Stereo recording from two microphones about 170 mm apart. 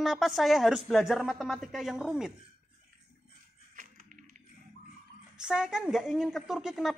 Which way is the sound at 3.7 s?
50° right (ahead or behind).